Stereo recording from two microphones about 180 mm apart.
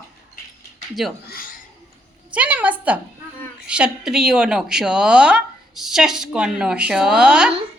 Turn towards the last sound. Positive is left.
turn(degrees=-5)  # may be behind; listen again after turning